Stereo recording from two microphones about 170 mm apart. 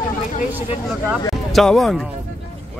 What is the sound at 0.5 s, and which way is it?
Speech, 10° right (ahead or behind).